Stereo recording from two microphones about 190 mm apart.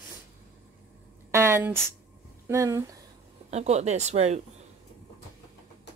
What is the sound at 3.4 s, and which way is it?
Speech, 35° right (ahead or behind).